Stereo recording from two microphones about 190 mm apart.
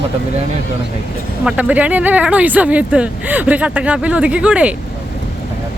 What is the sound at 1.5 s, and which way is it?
Speech, 5° right (ahead or behind).